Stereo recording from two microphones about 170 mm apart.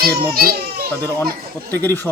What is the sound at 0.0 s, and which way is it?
Speech, 60° right (ahead or behind).